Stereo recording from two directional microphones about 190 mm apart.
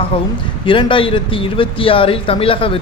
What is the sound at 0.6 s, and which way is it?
A man's voice, 25° left (ahead or behind).